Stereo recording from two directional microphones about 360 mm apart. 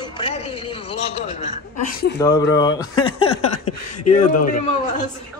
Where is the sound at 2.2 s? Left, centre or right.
Centre.